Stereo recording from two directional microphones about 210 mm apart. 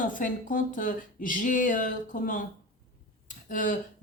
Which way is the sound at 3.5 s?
40° left (ahead or behind).